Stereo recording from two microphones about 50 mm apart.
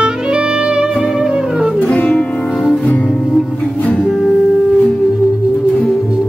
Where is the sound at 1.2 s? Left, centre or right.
Centre.